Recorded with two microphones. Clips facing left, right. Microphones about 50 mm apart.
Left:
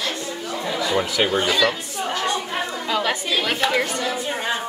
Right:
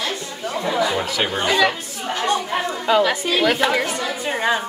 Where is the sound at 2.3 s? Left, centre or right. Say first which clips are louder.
Right 4 dB; centre.